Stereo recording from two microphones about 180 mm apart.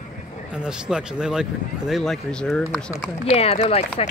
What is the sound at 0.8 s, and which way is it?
Speech, 5° right (ahead or behind).